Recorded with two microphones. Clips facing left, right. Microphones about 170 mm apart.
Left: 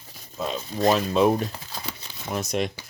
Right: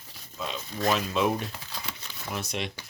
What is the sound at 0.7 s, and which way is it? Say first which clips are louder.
Speech: left 6 dB; 30° left (ahead or behind).